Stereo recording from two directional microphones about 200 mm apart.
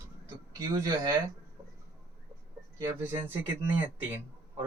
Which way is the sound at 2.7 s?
10° right (ahead or behind).